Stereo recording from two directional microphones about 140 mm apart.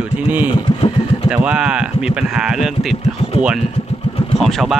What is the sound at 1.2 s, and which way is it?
Speech, 5° right (ahead or behind).